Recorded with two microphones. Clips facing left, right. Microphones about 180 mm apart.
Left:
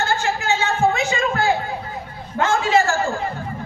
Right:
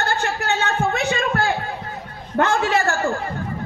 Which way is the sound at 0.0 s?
65° right (ahead or behind).